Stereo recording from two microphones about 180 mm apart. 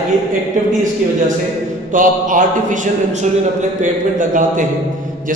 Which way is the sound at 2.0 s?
45° right (ahead or behind).